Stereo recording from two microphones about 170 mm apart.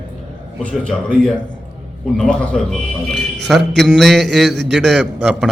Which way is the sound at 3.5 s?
80° right.